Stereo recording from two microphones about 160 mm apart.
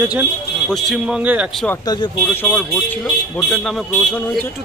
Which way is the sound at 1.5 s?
5° left (ahead or behind).